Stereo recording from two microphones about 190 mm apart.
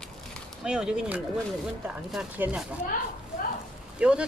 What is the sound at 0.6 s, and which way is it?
A woman's voice, 5° right (ahead or behind).